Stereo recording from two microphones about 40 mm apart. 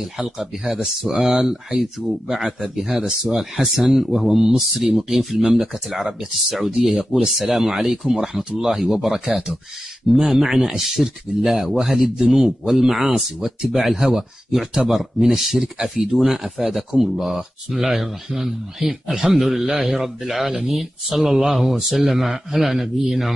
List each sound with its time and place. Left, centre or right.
0.0 s speech: centre
1.7 s speech: centre
16.1 s speech: right
16.4 s speech: centre
17.6 s speech: centre
19.1 s speech: centre
19.4 s speech: centre